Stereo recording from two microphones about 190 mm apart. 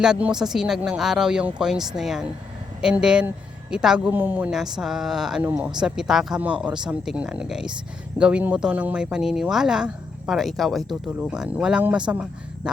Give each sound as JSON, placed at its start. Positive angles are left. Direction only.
{"t": 0.0, "sound": "speech", "side_deg": -5}